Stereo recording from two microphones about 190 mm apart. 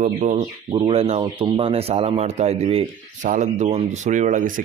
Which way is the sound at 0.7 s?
30° right (ahead or behind).